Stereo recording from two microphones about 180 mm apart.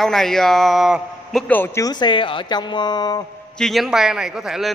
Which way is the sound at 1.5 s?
15° left (ahead or behind).